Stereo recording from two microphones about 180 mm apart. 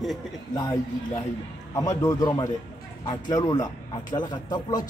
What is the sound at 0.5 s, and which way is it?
A man's voice, 20° left (ahead or behind).